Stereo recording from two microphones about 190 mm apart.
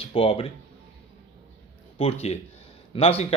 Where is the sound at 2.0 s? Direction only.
30° left (ahead or behind).